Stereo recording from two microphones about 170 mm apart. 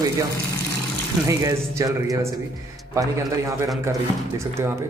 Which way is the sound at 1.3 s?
15° right (ahead or behind).